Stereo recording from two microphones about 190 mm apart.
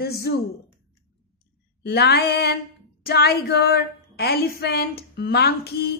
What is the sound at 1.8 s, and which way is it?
Speech, 55° left (ahead or behind).